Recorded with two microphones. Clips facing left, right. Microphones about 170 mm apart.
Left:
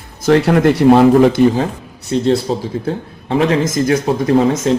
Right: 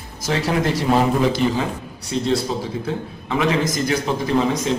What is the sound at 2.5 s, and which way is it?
Speech, 35° left (ahead or behind).